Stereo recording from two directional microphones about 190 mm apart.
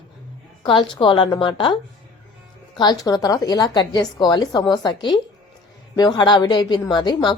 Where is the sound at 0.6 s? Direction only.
25° left (ahead or behind).